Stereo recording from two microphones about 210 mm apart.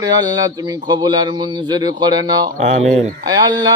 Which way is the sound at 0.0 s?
20° right (ahead or behind).